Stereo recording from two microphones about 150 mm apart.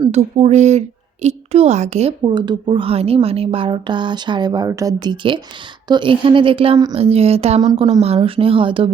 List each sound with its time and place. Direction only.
0.1 s a woman's voice: 45° right (ahead or behind)
2.2 s a woman's voice: 30° right (ahead or behind)
7.6 s a woman's voice: 30° right (ahead or behind)